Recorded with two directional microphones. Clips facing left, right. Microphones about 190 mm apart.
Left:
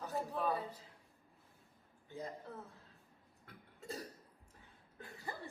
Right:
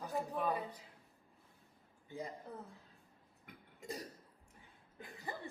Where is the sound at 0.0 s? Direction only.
15° right (ahead or behind).